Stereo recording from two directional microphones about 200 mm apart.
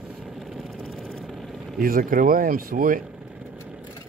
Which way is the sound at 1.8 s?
45° right (ahead or behind).